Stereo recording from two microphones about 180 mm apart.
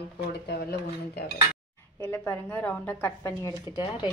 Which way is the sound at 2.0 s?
15° left (ahead or behind).